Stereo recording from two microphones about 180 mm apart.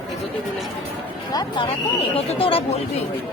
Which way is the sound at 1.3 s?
25° left (ahead or behind).